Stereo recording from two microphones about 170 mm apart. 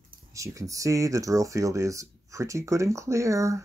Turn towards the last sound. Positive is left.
turn(degrees=-20)  # may be behind; listen again after turning